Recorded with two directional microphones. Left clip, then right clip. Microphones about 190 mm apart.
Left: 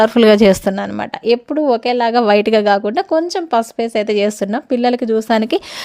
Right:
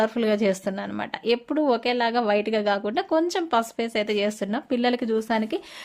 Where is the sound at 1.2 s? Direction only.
30° left (ahead or behind); by 5.6 s 45° left (ahead or behind).